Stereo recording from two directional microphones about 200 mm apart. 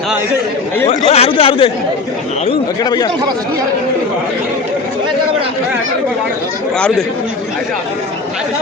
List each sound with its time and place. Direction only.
0.9 s speech: 30° left (ahead or behind)
2.5 s chatter: 20° left (ahead or behind)